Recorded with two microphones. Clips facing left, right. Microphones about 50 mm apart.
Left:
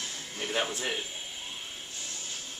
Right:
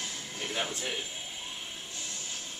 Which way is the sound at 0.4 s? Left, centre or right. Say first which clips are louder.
Left 3 dB; left.